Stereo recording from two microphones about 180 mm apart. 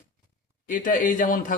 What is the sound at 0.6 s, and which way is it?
Speech, 45° left (ahead or behind).